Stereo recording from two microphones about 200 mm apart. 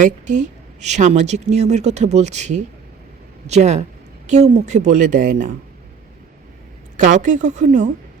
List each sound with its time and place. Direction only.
0.0 s speech: 40° right (ahead or behind)
6.9 s speech: 40° right (ahead or behind)